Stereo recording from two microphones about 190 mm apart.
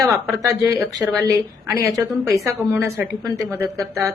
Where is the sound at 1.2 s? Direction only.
15° right (ahead or behind).